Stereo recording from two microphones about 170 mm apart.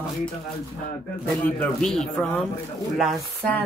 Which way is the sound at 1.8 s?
5° left (ahead or behind).